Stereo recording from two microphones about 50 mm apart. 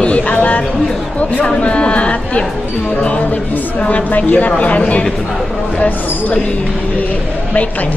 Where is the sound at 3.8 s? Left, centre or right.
Left.